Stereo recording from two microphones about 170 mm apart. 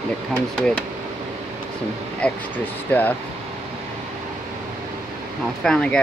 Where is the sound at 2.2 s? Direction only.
5° left (ahead or behind).